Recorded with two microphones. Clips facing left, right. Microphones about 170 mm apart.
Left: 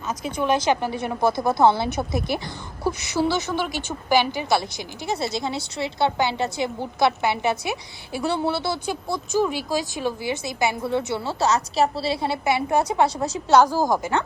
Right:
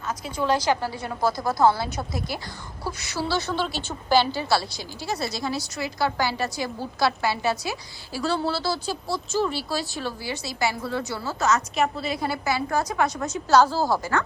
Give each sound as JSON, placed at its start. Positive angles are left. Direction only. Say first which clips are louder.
{"t": 0.1, "sound": "a woman's voice", "louder": "left 2 dB", "side_deg": 20}
{"t": 13.5, "sound": "a woman's voice", "louder": "left 2 dB", "side_deg": 15}